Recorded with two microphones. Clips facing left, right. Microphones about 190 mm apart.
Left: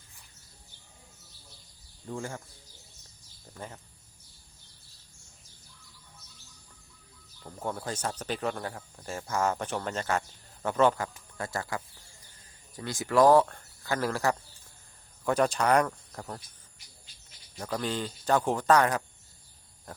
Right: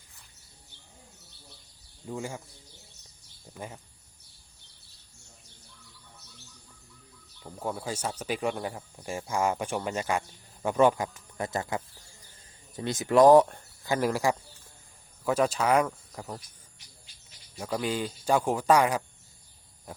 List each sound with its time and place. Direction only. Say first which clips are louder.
2.0 s speech: right 1 dB; 10° right (ahead or behind)
3.5 s speech: right 2 dB; 10° right (ahead or behind)
7.4 s speech: right 1 dB; 5° right (ahead or behind)
17.6 s speech: right 2 dB; 10° right (ahead or behind)